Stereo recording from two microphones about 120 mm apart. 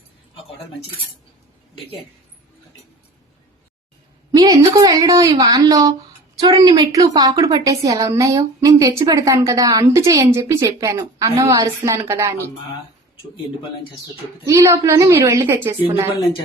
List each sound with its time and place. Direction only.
4.3 s a woman's voice: 30° right (ahead or behind)
14.4 s a woman's voice: 25° right (ahead or behind)